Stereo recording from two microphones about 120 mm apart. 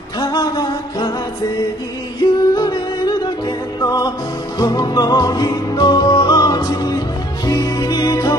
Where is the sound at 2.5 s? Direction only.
35° left (ahead or behind).